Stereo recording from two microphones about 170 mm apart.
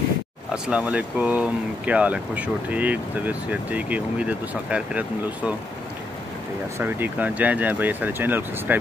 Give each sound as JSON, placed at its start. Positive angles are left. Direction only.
{"t": 0.7, "sound": "speech", "side_deg": -10}
{"t": 6.8, "sound": "speech", "side_deg": -10}